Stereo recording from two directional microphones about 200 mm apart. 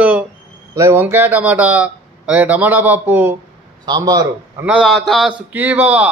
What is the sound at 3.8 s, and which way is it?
Speech, 20° right (ahead or behind).